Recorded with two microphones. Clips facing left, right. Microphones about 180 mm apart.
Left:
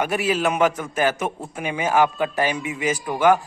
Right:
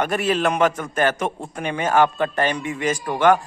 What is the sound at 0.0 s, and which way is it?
A man's voice, 10° left (ahead or behind).